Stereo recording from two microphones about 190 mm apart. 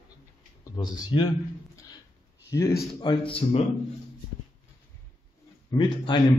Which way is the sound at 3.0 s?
25° left (ahead or behind).